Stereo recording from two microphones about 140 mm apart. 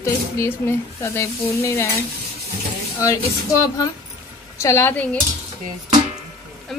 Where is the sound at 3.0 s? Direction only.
20° left (ahead or behind).